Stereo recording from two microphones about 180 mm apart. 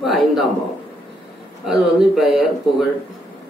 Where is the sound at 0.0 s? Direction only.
Centre (ahead or behind).